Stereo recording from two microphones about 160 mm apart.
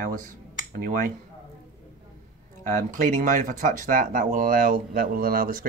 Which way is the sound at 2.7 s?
55° right (ahead or behind).